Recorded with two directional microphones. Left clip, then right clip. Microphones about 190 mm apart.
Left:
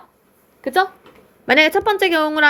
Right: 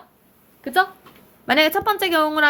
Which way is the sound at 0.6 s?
35° left (ahead or behind).